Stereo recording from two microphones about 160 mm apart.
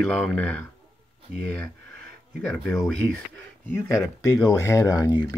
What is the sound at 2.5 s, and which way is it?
Speech, centre (ahead or behind).